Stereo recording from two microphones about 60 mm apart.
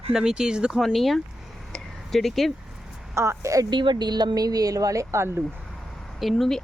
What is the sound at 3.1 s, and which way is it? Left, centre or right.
Speech, right.